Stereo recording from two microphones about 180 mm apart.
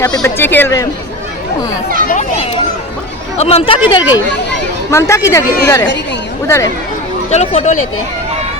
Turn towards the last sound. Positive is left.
turn(degrees=35)  # may be behind; listen again after turning